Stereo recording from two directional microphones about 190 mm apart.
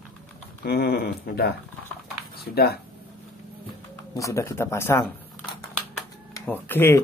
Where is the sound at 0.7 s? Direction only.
55° left (ahead or behind).